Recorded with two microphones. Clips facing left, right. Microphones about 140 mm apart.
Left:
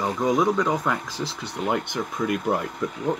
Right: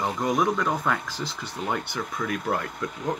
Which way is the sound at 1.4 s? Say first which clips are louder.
Left 4 dB; 15° left (ahead or behind).